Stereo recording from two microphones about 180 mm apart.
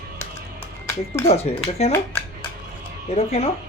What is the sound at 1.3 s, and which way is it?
Speech, 35° left (ahead or behind).